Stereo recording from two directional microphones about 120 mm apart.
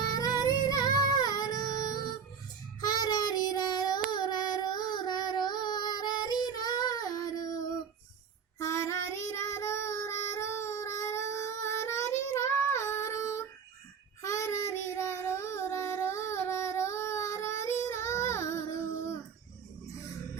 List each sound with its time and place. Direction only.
0.0 s child singing: 30° left (ahead or behind)